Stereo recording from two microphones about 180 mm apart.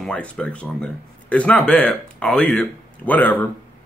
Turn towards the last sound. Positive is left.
turn(degrees=10)  # may be behind; listen again after turning